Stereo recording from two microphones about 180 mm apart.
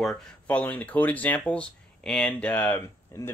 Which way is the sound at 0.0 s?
5° left (ahead or behind).